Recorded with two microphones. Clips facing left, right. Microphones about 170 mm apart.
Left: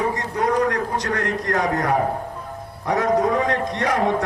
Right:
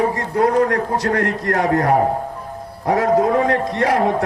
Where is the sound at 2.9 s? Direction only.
30° right (ahead or behind).